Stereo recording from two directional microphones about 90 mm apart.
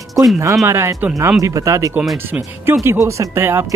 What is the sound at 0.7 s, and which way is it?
Speech, 30° right (ahead or behind).